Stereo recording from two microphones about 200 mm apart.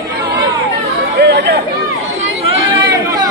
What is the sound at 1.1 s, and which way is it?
Chatter, 55° right (ahead or behind).